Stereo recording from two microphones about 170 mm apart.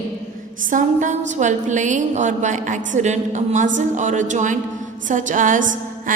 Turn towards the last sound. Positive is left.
turn(degrees=-50)  # may be behind; listen again after turning